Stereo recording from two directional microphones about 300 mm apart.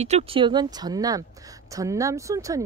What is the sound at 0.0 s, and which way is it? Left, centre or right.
Speech, right.